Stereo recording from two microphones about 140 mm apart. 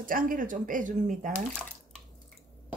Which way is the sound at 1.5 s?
10° left (ahead or behind).